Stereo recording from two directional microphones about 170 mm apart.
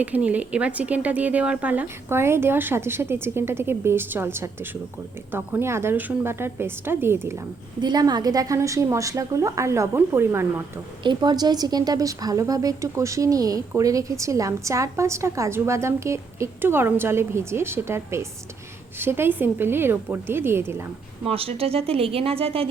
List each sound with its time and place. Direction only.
0.0 s a woman's voice: 10° right (ahead or behind)
7.8 s a woman's voice: 25° right (ahead or behind)
11.0 s a woman's voice: 25° right (ahead or behind)
21.2 s speech: 35° right (ahead or behind)